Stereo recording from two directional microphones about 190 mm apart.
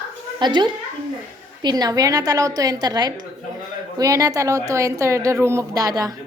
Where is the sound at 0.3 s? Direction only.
25° right (ahead or behind).